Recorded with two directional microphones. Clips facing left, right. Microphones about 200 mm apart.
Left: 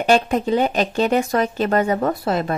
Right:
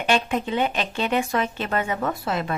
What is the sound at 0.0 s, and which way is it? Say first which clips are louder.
Speech: left 6 dB; 40° left (ahead or behind).